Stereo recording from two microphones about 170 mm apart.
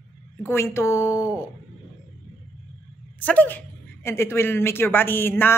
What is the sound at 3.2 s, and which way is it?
A woman's voice, 10° left (ahead or behind).